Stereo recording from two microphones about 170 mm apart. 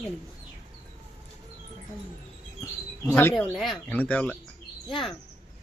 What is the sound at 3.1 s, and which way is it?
Speech, 5° left (ahead or behind).